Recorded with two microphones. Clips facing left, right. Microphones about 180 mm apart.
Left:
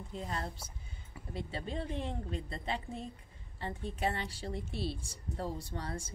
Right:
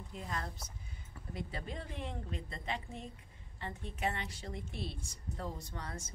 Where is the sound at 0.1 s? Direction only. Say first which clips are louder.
Left 3 dB; 30° left (ahead or behind).